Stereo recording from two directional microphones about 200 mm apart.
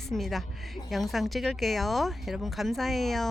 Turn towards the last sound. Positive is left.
turn(degrees=0)  # may be behind; listen again after turning